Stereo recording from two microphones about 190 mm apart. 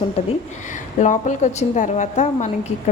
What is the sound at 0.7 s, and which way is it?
A woman's voice, 40° left (ahead or behind).